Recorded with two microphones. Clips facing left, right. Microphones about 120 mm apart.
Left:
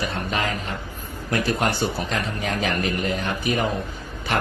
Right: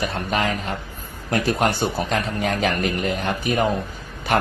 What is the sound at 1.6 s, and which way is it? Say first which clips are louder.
Speech: right 2 dB; 40° right (ahead or behind).